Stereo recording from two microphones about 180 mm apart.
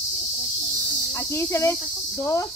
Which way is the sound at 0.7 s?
Centre (ahead or behind).